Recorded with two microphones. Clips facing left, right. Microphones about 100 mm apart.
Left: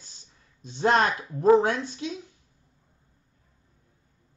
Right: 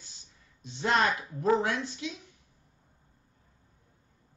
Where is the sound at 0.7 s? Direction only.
40° left (ahead or behind).